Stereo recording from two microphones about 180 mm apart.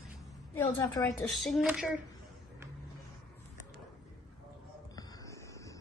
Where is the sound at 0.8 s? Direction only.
20° left (ahead or behind).